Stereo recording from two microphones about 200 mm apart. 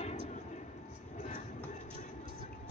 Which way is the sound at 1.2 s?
35° left (ahead or behind).